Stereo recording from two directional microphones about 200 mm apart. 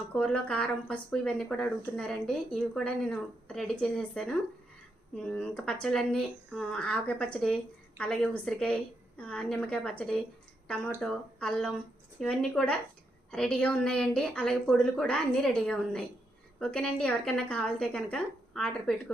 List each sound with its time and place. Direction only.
0.1 s speech: 5° left (ahead or behind)